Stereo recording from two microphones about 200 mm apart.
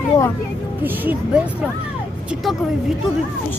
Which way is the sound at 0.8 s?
10° right (ahead or behind).